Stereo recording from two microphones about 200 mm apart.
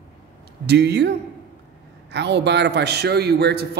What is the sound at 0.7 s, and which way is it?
Speech, 55° right (ahead or behind).